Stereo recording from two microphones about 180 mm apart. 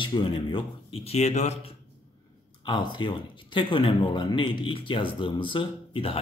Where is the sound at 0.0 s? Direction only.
25° left (ahead or behind).